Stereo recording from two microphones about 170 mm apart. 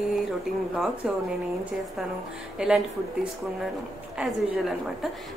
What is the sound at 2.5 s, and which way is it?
Speech, 5° right (ahead or behind).